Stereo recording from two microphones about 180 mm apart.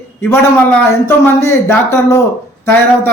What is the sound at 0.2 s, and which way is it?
A man's voice, 10° left (ahead or behind).